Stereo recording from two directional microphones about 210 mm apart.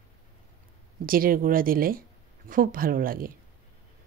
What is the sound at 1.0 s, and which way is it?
A woman's voice, 45° right (ahead or behind).